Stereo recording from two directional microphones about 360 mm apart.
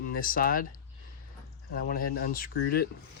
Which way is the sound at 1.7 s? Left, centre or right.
Left.